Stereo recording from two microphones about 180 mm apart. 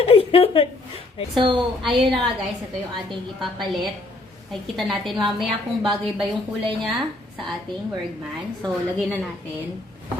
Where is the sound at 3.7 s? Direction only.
Centre (ahead or behind).